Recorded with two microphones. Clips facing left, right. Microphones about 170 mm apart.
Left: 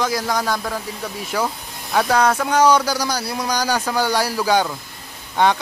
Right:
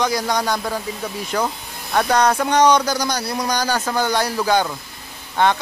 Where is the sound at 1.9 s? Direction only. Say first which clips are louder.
Even; 5° left (ahead or behind).